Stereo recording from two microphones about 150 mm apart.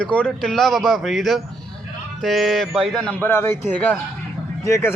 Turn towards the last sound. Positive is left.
turn(degrees=20)  # may be behind; listen again after turning